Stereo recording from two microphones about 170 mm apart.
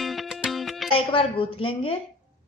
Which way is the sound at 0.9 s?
30° left (ahead or behind).